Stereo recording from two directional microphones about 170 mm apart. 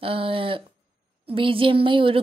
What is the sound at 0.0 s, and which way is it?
A woman's voice, 35° right (ahead or behind).